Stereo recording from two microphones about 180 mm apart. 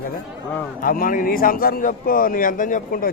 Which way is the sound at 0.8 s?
50° left (ahead or behind).